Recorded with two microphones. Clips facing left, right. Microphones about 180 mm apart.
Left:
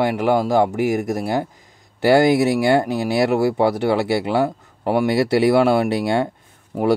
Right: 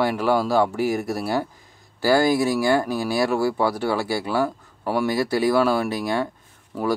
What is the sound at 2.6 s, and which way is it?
Speech, 25° left (ahead or behind).